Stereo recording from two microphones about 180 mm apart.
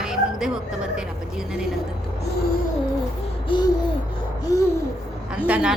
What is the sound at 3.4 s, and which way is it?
Hoot, 25° left (ahead or behind).